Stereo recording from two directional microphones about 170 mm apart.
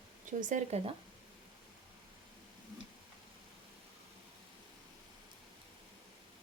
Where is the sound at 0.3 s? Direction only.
50° right (ahead or behind).